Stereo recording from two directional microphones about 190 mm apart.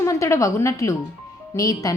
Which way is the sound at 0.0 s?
15° left (ahead or behind).